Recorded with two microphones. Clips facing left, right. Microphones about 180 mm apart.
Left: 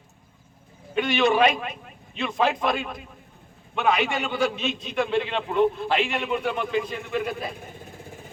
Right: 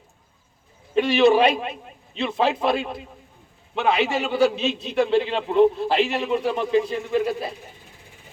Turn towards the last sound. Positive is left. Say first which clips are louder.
# right 5 dB
turn(degrees=-30)  # may be behind; listen again after turning